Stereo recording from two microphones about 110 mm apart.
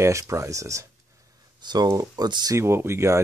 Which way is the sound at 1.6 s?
40° right (ahead or behind).